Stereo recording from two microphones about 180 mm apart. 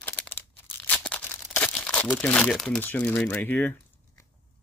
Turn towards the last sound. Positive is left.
turn(degrees=10)  # may be behind; listen again after turning